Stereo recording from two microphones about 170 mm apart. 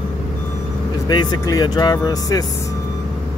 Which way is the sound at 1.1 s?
25° left (ahead or behind).